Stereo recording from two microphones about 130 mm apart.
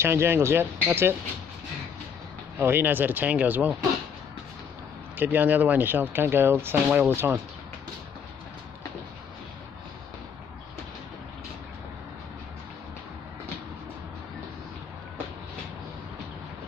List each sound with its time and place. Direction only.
0.0 s speech: 20° right (ahead or behind)
2.6 s speech: 15° right (ahead or behind)
5.1 s speech: 15° right (ahead or behind)